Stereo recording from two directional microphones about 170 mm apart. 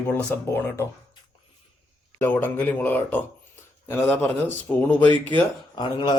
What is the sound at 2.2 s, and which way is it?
Speech, 10° left (ahead or behind).